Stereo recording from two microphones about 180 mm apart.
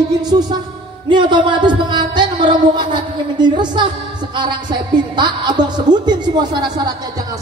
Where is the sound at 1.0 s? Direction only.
25° right (ahead or behind).